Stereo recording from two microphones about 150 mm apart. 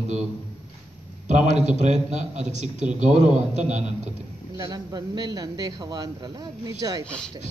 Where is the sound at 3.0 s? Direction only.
5° right (ahead or behind).